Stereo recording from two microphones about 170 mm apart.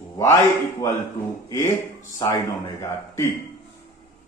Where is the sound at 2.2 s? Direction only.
20° left (ahead or behind).